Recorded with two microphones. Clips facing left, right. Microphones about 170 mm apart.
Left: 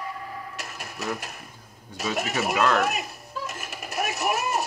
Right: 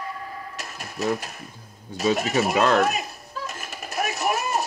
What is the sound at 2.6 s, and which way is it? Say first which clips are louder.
Speech: right 2 dB; 30° right (ahead or behind).